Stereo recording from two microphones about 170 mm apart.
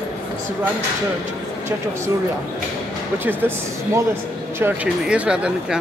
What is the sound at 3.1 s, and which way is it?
Speech, 10° right (ahead or behind).